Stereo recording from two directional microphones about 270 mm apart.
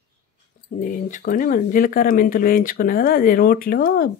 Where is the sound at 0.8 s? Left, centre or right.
Left.